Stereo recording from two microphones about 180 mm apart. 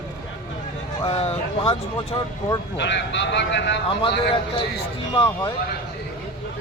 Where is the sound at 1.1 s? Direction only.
35° left (ahead or behind).